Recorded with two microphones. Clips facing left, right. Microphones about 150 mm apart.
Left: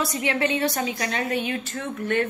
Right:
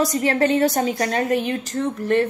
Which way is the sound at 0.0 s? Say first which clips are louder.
Right 6 dB; 40° right (ahead or behind).